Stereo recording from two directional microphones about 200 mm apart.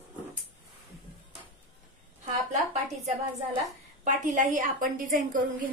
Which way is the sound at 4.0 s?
40° right (ahead or behind).